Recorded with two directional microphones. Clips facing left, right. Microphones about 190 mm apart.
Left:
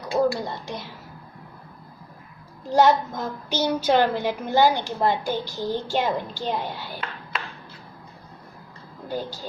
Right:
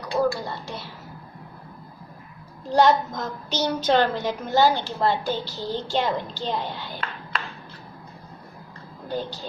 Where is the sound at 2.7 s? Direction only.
10° left (ahead or behind).